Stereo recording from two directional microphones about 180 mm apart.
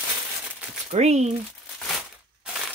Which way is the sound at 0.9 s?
40° right (ahead or behind).